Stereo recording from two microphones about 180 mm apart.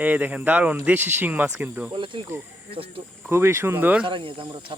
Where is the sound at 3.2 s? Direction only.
15° right (ahead or behind).